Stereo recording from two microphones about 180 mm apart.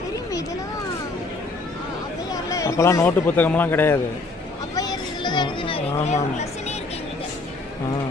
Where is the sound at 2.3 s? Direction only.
20° left (ahead or behind).